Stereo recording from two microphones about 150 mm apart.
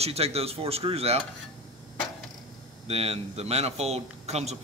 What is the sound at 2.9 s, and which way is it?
A man's voice, 45° right (ahead or behind).